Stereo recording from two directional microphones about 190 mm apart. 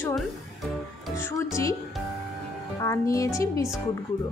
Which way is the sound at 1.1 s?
15° left (ahead or behind).